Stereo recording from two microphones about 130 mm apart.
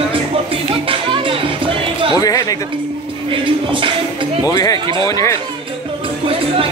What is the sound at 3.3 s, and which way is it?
Speech, 40° right (ahead or behind).